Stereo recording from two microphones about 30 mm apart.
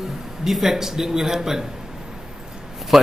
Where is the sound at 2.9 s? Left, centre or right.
Centre.